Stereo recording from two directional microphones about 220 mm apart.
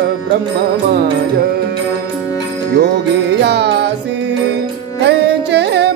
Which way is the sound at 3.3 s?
50° right (ahead or behind).